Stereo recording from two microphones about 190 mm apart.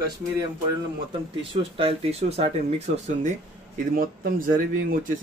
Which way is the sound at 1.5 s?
30° right (ahead or behind).